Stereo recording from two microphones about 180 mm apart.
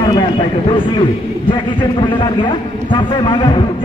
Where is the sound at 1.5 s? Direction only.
25° left (ahead or behind).